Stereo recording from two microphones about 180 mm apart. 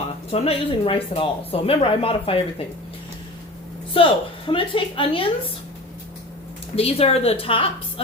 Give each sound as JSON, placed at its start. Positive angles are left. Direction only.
{"t": 0.3, "sound": "speech", "side_deg": 35}
{"t": 3.9, "sound": "a woman's voice", "side_deg": 30}
{"t": 6.7, "sound": "speech", "side_deg": 35}